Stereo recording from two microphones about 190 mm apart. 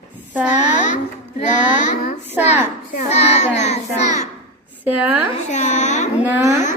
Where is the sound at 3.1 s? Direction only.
35° left (ahead or behind).